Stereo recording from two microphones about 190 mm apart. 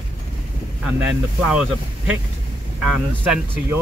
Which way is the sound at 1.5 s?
5° right (ahead or behind).